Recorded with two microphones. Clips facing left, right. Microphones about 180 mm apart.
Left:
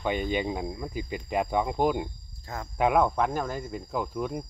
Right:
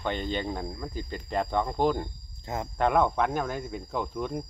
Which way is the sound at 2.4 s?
20° right (ahead or behind).